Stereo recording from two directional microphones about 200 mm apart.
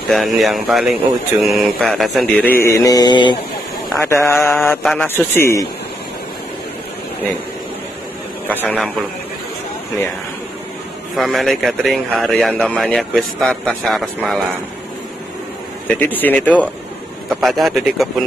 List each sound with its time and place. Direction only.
0.1 s speech: centre (ahead or behind)
2.6 s mantra: 15° left (ahead or behind)
3.9 s a man's voice: 10° left (ahead or behind)
8.5 s speech: 5° left (ahead or behind)
11.1 s speech: centre (ahead or behind)
15.9 s a man's voice: 10° left (ahead or behind)